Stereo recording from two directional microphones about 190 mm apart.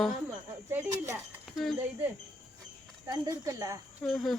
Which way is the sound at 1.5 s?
Centre (ahead or behind).